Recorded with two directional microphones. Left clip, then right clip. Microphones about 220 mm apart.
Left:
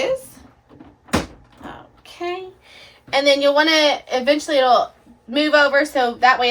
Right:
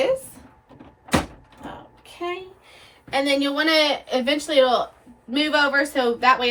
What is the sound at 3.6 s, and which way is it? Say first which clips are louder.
A woman's voice: left 4 dB; 15° left (ahead or behind).